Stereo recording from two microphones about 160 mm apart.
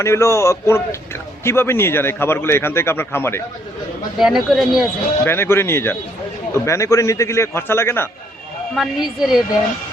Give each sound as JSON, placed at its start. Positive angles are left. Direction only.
{"t": 0.0, "sound": "a man's voice", "side_deg": 20}
{"t": 4.2, "sound": "a woman's voice", "side_deg": 0}
{"t": 5.2, "sound": "a man's voice", "side_deg": 15}
{"t": 8.7, "sound": "a woman's voice", "side_deg": 0}